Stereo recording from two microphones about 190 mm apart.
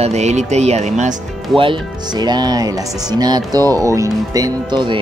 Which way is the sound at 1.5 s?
25° right (ahead or behind).